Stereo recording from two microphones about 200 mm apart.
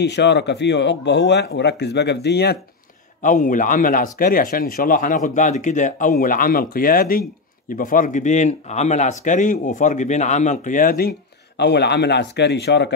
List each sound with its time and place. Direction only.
0.0 s speech: 60° left (ahead or behind)
3.2 s speech: 40° left (ahead or behind); by 12.9 s 55° left (ahead or behind)